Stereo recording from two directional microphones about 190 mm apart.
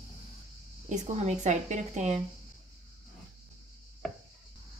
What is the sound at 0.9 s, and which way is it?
Speech, 40° right (ahead or behind).